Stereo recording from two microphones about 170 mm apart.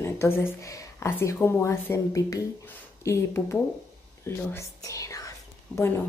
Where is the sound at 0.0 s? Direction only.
15° left (ahead or behind).